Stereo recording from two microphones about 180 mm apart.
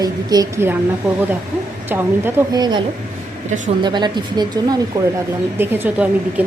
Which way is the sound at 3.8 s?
25° right (ahead or behind).